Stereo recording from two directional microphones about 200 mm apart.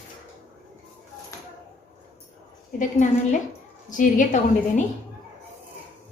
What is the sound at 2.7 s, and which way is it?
A woman's voice, 40° left (ahead or behind).